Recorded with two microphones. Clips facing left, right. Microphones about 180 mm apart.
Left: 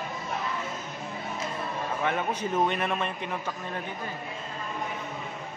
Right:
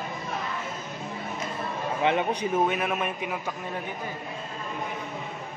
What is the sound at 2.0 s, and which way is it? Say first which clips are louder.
A man's voice: right 5 dB; 20° right (ahead or behind).